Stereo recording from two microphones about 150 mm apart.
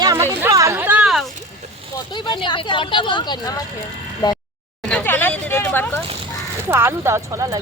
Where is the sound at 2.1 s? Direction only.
30° left (ahead or behind).